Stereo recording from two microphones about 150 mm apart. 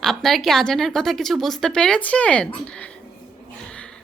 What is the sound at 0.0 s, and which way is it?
A woman's voice, centre (ahead or behind).